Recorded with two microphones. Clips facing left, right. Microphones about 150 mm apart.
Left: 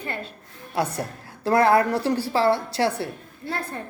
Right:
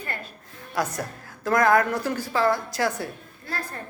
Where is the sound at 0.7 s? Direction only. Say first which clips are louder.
Left 2 dB; 30° left (ahead or behind).